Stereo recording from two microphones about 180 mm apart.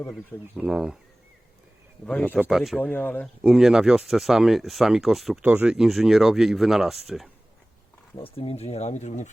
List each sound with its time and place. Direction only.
0.1 s speech: centre (ahead or behind)
2.0 s speech: 5° left (ahead or behind)
3.4 s speech: centre (ahead or behind)
8.1 s speech: 30° left (ahead or behind)